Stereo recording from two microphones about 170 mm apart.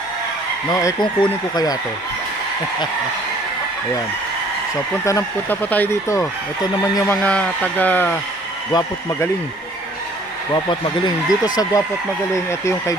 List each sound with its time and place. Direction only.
0.7 s speech: 20° left (ahead or behind)
5.0 s speech: 15° left (ahead or behind)
7.1 s speech: 5° left (ahead or behind)
10.5 s speech: 25° left (ahead or behind)